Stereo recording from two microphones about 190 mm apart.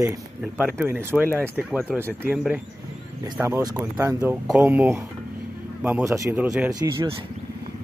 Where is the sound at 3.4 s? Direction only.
15° right (ahead or behind).